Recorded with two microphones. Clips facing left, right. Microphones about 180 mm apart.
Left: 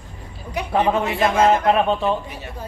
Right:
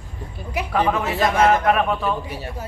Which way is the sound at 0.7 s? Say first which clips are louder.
Left 2 dB; 30° left (ahead or behind).